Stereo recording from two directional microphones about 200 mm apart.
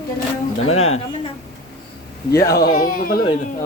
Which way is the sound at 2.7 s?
45° left (ahead or behind).